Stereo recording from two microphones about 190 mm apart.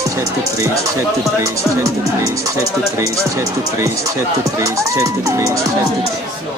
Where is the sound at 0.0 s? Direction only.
15° right (ahead or behind).